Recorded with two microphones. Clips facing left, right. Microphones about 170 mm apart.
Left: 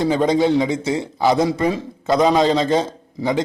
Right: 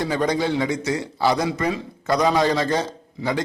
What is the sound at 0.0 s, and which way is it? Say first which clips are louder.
A man's voice: left 5 dB; 20° left (ahead or behind).